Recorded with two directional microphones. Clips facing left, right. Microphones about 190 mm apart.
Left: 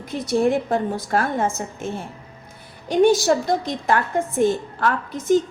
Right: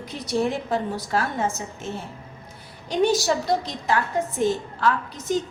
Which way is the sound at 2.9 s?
50° left (ahead or behind).